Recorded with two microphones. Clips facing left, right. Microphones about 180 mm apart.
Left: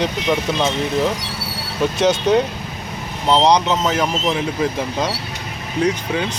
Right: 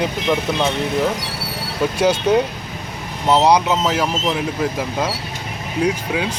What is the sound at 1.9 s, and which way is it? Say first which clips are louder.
Speech: even; 10° right (ahead or behind).